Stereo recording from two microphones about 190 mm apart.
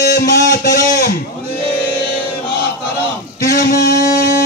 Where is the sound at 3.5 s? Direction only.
50° left (ahead or behind).